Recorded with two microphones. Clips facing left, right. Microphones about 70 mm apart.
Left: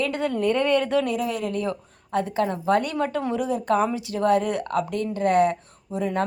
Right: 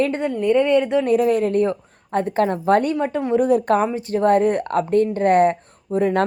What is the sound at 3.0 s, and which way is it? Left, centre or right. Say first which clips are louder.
Speech: right 4 dB; right.